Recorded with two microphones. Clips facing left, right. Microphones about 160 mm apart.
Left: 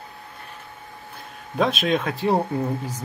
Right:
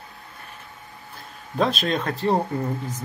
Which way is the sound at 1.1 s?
Centre (ahead or behind).